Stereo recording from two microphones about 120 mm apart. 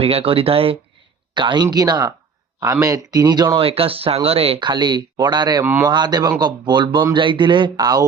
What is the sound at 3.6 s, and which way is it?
Speech, 55° right (ahead or behind).